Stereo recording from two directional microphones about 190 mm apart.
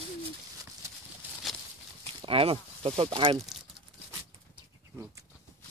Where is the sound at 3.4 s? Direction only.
Centre (ahead or behind).